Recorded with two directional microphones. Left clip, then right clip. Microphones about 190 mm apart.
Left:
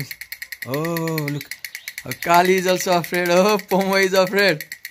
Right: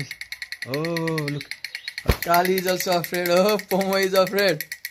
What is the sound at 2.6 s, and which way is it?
Speech, 15° left (ahead or behind).